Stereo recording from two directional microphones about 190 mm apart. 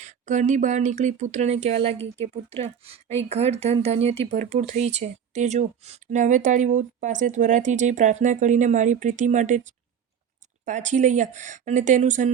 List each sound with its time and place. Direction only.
0.0 s speech: 40° right (ahead or behind)